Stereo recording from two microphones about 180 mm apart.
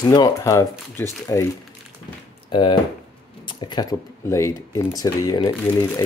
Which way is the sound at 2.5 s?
25° left (ahead or behind).